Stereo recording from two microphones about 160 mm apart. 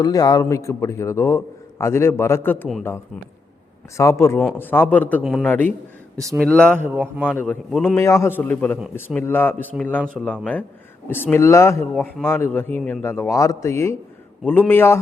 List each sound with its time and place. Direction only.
0.0 s a man's voice: 25° left (ahead or behind)
3.9 s speech: 20° left (ahead or behind)
5.2 s speech: centre (ahead or behind)
6.7 s speech: 10° right (ahead or behind)
7.3 s speech: 10° left (ahead or behind)
7.9 s speech: 15° left (ahead or behind)